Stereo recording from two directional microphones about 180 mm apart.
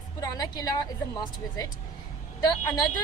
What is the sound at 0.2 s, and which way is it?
A woman's voice, 20° left (ahead or behind).